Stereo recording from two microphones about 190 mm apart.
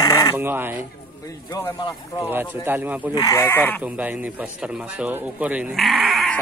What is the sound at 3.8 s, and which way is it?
A man's voice, 10° right (ahead or behind).